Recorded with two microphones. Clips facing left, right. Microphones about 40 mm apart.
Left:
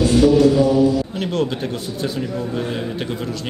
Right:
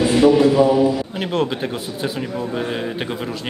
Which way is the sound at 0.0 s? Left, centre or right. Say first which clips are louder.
Even; right.